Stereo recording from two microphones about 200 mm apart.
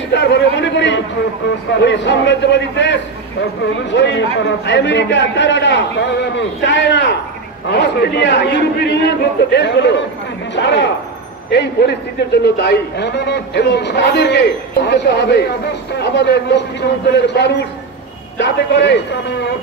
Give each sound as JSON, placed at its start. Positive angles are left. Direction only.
{"t": 0.1, "sound": "a man's voice", "side_deg": 60}